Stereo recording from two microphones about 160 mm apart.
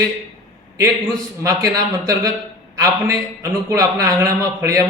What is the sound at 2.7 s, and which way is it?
A man's voice, 20° right (ahead or behind).